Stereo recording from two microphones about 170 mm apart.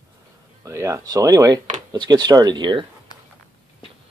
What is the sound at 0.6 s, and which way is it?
Speech, 20° right (ahead or behind).